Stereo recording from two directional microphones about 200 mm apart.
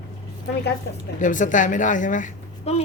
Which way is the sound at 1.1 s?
40° left (ahead or behind).